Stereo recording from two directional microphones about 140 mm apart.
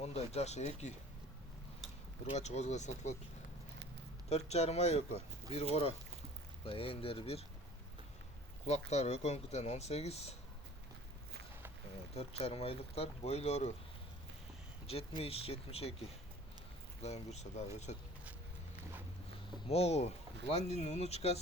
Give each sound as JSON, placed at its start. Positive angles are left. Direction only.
{"t": 0.0, "sound": "speech", "side_deg": 50}
{"t": 2.3, "sound": "speech", "side_deg": 50}
{"t": 4.3, "sound": "speech", "side_deg": 50}
{"t": 6.7, "sound": "speech", "side_deg": 40}
{"t": 8.6, "sound": "speech", "side_deg": 50}
{"t": 12.1, "sound": "speech", "side_deg": 45}
{"t": 14.8, "sound": "speech", "side_deg": 45}
{"t": 19.6, "sound": "speech", "side_deg": 45}